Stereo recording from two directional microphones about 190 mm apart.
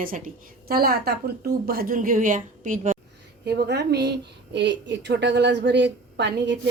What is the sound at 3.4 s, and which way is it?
A woman's voice, 55° right (ahead or behind).